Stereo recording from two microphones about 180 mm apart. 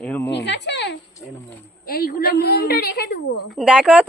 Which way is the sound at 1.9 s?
55° left (ahead or behind).